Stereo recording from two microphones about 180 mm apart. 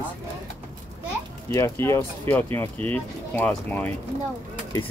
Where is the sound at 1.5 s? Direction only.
15° left (ahead or behind).